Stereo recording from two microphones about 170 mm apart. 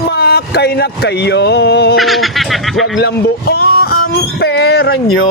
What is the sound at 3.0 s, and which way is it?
Speech, 70° left (ahead or behind).